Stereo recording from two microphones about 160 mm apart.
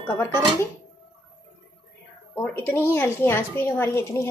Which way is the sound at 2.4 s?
15° left (ahead or behind).